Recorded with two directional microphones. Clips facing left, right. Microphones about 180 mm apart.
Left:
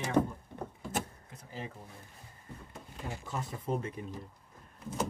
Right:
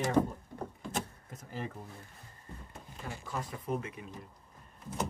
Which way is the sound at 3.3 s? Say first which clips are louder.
Even; 30° left (ahead or behind).